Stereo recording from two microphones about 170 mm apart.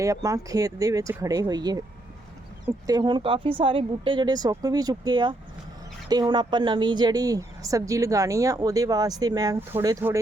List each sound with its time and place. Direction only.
0.0 s speech: 20° right (ahead or behind)